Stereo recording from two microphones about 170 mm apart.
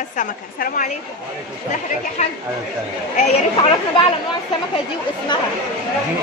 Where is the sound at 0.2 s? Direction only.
50° left (ahead or behind).